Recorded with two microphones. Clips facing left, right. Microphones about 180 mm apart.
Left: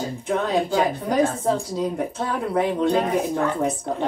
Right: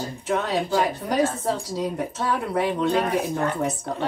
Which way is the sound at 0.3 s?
50° left (ahead or behind).